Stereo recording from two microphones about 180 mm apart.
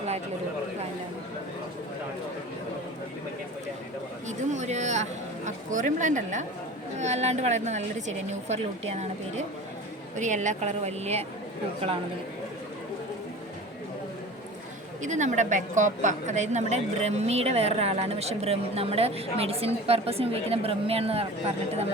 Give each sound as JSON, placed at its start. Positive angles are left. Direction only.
{"t": 4.3, "sound": "a sound", "side_deg": -40}
{"t": 5.5, "sound": "a woman's voice", "side_deg": -45}
{"t": 10.2, "sound": "a woman's voice", "side_deg": -40}
{"t": 15.0, "sound": "a woman's voice", "side_deg": -40}